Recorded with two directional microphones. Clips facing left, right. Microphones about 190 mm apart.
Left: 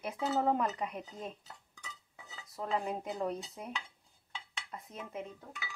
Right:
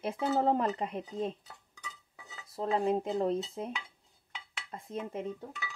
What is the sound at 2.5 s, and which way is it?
Speech, 30° right (ahead or behind).